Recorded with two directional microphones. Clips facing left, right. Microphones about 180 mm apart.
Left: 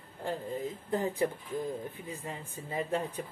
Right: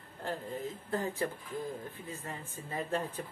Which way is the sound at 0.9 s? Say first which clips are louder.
Left 4 dB; 20° left (ahead or behind).